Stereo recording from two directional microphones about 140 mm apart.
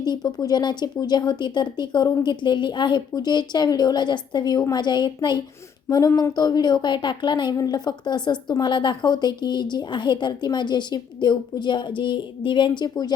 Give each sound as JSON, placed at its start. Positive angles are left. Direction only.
{"t": 0.0, "sound": "speech", "side_deg": 30}